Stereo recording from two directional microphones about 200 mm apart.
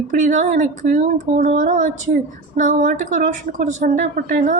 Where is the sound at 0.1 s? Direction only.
40° right (ahead or behind).